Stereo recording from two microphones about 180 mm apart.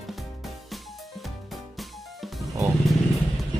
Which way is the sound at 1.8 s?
Centre (ahead or behind).